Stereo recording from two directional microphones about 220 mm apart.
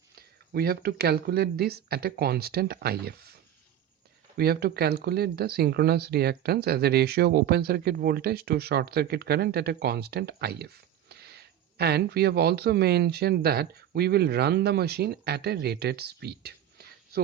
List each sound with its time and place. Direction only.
0.2 s speech: 45° right (ahead or behind)
4.4 s speech: 45° right (ahead or behind)